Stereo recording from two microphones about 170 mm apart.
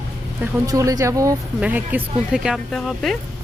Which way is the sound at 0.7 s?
20° right (ahead or behind).